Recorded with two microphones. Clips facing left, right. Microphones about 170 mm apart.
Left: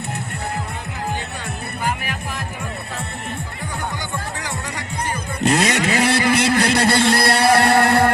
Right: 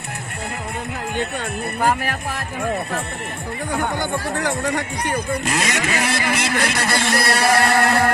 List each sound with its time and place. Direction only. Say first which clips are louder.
1.8 s music: right 5 dB; 60° right (ahead or behind)
3.8 s music: right 5 dB; 55° right (ahead or behind)
5.4 s a man's voice: left 5 dB; 60° left (ahead or behind)
6.0 s vehicle: left 5 dB; 60° left (ahead or behind)
6.5 s a sound: left 4 dB; 60° right (ahead or behind)
6.7 s a man's voice: left 4 dB; 60° left (ahead or behind)